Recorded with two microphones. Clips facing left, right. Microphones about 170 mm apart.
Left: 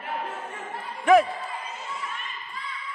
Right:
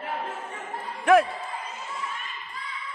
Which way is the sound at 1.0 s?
Centre (ahead or behind).